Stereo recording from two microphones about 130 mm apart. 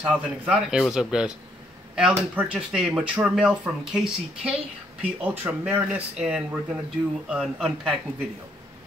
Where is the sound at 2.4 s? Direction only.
5° right (ahead or behind).